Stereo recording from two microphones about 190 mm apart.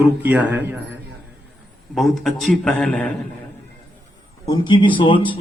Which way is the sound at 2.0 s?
Centre (ahead or behind).